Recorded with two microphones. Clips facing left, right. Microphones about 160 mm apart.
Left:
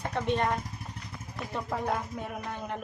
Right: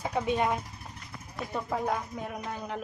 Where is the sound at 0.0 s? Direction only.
5° right (ahead or behind).